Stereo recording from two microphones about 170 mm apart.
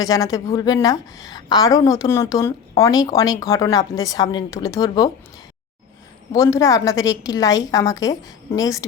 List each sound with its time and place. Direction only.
0.0 s a woman's voice: 20° left (ahead or behind)
6.3 s a woman's voice: 20° left (ahead or behind)